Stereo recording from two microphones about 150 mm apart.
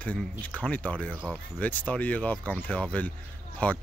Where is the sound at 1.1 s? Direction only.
10° right (ahead or behind).